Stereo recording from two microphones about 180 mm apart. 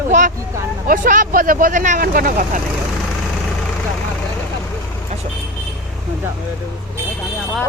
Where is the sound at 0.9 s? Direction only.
50° right (ahead or behind).